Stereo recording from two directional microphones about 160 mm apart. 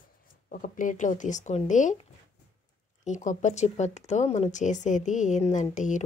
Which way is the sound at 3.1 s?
50° left (ahead or behind).